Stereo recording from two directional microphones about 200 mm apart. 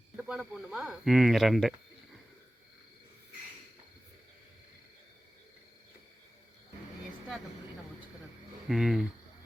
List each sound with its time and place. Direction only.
0.2 s speech: 5° right (ahead or behind)
8.6 s speech: centre (ahead or behind)